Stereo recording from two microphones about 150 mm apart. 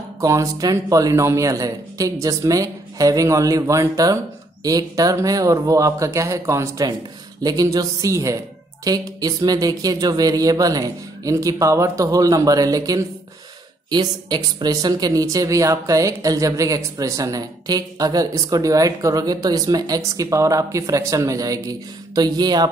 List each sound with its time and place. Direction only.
0.2 s speech: 20° right (ahead or behind)